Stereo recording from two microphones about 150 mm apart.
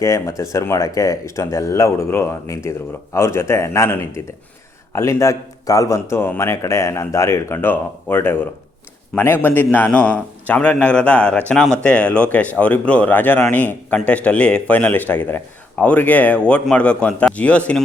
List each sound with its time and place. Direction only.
0.0 s a man's voice: 20° left (ahead or behind)